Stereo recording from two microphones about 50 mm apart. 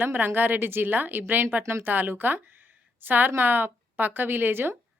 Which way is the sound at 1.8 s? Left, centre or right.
Right.